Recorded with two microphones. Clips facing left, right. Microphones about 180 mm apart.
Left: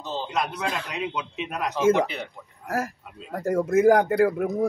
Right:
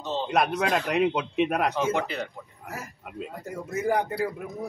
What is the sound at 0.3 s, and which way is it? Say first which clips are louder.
A man's voice: right 5 dB; 60° right (ahead or behind).